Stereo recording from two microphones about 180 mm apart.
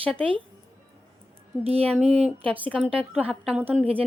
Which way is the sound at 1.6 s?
35° right (ahead or behind).